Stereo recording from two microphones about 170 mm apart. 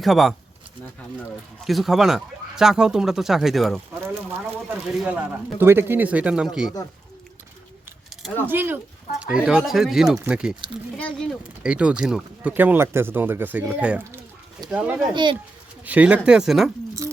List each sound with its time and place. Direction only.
0.0 s speech: centre (ahead or behind)
1.6 s speech: centre (ahead or behind)
4.0 s speech: 10° right (ahead or behind)
8.4 s speech: 10° right (ahead or behind)
10.9 s speech: 5° left (ahead or behind)
11.6 s speech: 5° right (ahead or behind)
15.1 s speech: 25° right (ahead or behind)
15.8 s speech: 10° right (ahead or behind)